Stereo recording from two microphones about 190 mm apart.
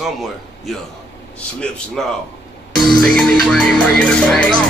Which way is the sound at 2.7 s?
5° left (ahead or behind).